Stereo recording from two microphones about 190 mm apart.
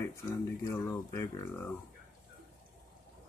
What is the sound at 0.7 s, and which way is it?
Speech, 15° left (ahead or behind).